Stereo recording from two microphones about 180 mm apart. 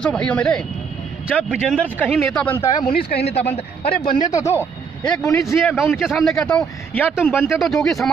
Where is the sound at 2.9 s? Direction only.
35° left (ahead or behind).